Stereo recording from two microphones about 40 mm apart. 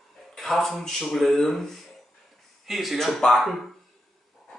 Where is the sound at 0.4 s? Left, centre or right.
Centre.